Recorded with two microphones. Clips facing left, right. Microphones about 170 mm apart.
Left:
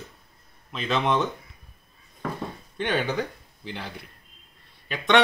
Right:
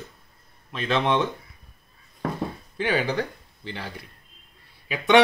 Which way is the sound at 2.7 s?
Centre (ahead or behind).